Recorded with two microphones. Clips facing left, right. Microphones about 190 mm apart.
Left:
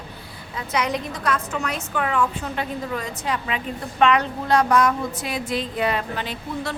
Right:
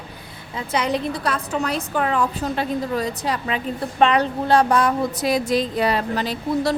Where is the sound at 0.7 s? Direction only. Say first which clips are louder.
Right 3 dB; 30° right (ahead or behind).